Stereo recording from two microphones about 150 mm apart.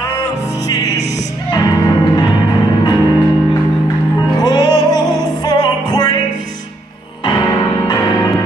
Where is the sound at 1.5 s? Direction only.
25° left (ahead or behind).